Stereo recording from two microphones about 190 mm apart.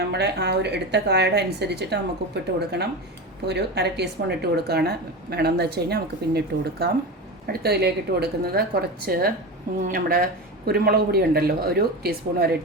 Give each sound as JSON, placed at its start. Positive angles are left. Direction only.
{"t": 0.0, "sound": "speech", "side_deg": -60}